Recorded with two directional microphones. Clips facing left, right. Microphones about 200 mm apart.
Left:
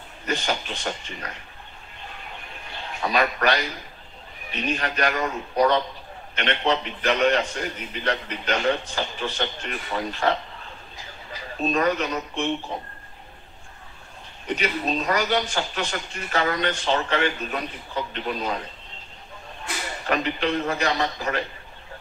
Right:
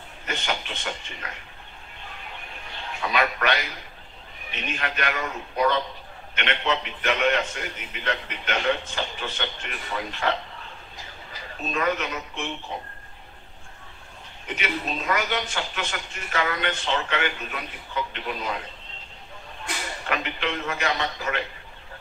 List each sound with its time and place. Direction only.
0.3 s a man's voice: 40° left (ahead or behind)
3.0 s a man's voice: 40° left (ahead or behind)
4.6 s a man's voice: 35° left (ahead or behind)
11.7 s a man's voice: 40° left (ahead or behind)
14.5 s a man's voice: 35° left (ahead or behind)
20.1 s a man's voice: 40° left (ahead or behind)